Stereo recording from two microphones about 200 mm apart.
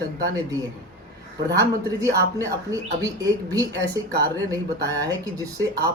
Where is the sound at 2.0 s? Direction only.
15° right (ahead or behind).